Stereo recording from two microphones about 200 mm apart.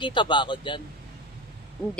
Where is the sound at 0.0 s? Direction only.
25° left (ahead or behind).